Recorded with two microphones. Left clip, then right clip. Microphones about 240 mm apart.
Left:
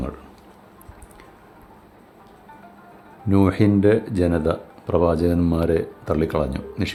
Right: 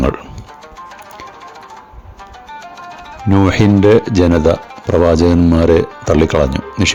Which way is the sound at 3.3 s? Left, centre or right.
Right.